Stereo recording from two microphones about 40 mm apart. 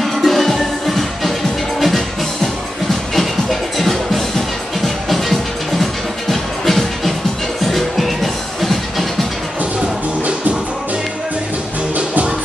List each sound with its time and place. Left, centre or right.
0.0 s music: centre
9.6 s music: right